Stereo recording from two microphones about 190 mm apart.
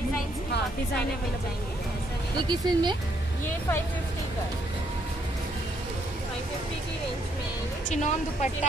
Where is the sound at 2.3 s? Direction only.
25° right (ahead or behind).